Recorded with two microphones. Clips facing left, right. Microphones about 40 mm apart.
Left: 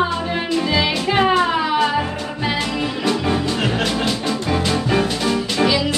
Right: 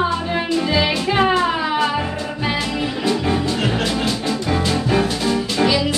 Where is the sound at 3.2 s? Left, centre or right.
Centre.